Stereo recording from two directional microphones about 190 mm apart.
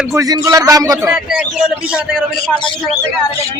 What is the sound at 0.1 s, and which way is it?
Speech, 20° right (ahead or behind).